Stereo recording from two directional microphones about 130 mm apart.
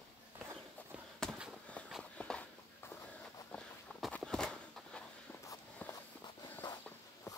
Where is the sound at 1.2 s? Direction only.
Centre (ahead or behind).